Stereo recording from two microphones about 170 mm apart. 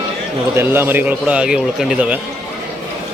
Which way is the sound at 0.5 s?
15° right (ahead or behind).